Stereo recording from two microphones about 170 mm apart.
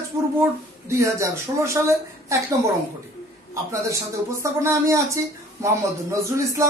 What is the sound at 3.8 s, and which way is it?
Speech, 15° right (ahead or behind).